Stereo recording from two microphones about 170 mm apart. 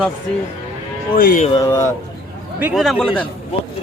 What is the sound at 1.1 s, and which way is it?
Speech, 50° left (ahead or behind).